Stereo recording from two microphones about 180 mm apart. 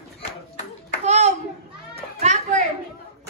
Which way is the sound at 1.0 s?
40° right (ahead or behind).